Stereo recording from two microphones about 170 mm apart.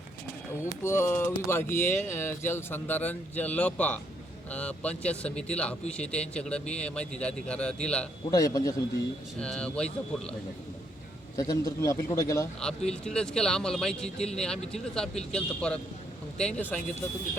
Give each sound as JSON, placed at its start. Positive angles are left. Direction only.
{"t": 0.9, "sound": "speech", "side_deg": 15}
{"t": 8.3, "sound": "speech", "side_deg": 20}
{"t": 9.4, "sound": "speech", "side_deg": 5}
{"t": 11.3, "sound": "speech", "side_deg": 20}
{"t": 12.5, "sound": "speech", "side_deg": 5}